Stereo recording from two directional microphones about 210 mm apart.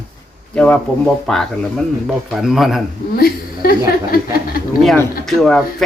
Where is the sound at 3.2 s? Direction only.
45° left (ahead or behind).